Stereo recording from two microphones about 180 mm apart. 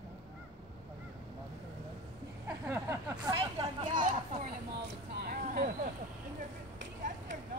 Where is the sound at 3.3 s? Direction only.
30° right (ahead or behind).